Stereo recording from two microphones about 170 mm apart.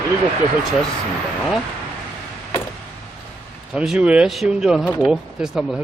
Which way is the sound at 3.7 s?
5° right (ahead or behind).